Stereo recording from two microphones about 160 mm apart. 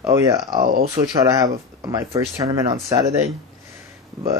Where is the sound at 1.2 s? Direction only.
20° right (ahead or behind).